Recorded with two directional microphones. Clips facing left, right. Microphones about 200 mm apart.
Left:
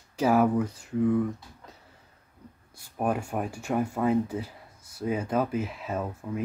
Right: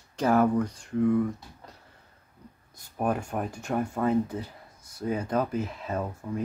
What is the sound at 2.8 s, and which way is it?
Speech, 10° left (ahead or behind).